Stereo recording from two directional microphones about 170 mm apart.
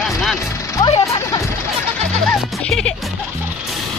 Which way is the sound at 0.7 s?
25° left (ahead or behind).